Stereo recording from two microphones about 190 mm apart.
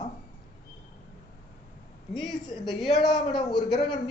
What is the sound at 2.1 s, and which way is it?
Speech, centre (ahead or behind).